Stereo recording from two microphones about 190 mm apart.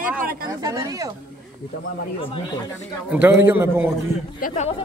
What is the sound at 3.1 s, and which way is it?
Speech, 10° right (ahead or behind).